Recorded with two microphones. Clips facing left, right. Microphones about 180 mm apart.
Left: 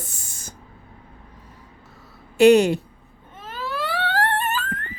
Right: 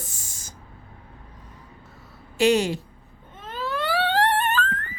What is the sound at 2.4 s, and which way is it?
Speech, 60° left (ahead or behind).